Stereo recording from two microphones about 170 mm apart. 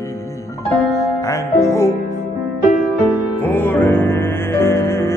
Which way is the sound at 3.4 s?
10° left (ahead or behind).